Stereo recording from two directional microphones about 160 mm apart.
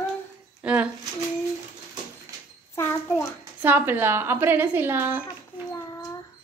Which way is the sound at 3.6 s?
10° right (ahead or behind).